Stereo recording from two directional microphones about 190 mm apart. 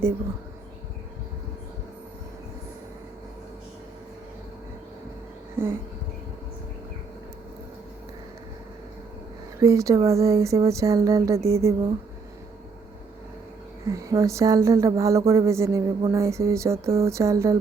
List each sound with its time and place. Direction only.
9.6 s speech: 15° right (ahead or behind)
13.8 s speech: 15° right (ahead or behind)